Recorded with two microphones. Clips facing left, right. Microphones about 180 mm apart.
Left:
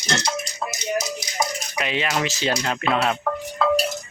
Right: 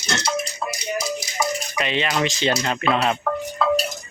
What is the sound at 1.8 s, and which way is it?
Speech, 5° left (ahead or behind).